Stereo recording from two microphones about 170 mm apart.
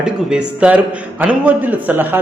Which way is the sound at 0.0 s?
5° right (ahead or behind).